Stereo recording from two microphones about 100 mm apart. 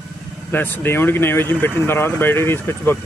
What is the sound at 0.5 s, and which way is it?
Speech, 20° left (ahead or behind).